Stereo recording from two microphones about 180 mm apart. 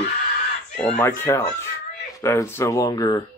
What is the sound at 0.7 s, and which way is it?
A man's voice, 5° left (ahead or behind).